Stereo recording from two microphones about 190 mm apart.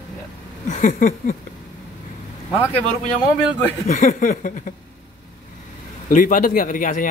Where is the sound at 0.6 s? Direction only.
40° left (ahead or behind).